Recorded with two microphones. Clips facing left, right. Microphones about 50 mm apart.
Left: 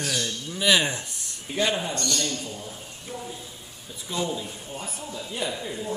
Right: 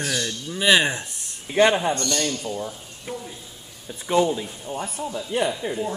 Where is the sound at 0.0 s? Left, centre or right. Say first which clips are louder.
Right 2 dB; centre.